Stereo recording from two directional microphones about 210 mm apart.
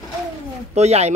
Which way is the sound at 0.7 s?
30° right (ahead or behind).